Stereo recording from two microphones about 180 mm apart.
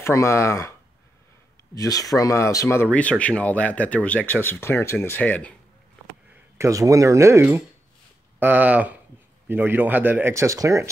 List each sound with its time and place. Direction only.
0.0 s speech: 15° left (ahead or behind)
1.8 s speech: 20° left (ahead or behind)
6.6 s speech: 15° right (ahead or behind)